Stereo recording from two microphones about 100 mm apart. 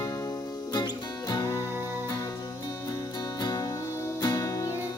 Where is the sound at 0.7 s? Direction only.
40° left (ahead or behind).